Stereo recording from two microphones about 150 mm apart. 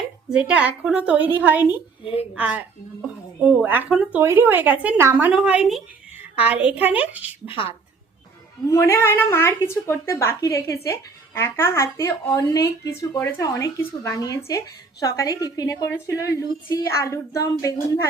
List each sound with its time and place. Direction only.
0.3 s a woman's voice: 10° right (ahead or behind)
8.7 s a woman's voice: 20° left (ahead or behind)